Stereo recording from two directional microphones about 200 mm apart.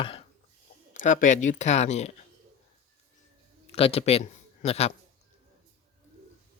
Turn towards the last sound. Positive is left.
turn(degrees=30)  # may be behind; listen again after turning